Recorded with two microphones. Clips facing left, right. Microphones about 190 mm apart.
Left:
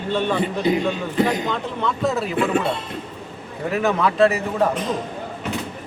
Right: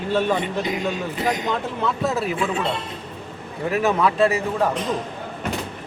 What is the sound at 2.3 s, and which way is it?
Speech, 60° left (ahead or behind).